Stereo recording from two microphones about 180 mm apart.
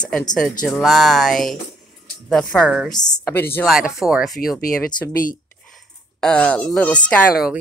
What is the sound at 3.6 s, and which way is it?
Music, centre (ahead or behind).